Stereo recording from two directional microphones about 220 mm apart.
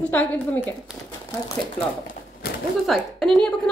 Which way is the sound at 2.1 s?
45° left (ahead or behind).